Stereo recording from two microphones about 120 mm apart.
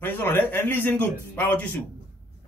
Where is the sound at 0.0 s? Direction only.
20° left (ahead or behind).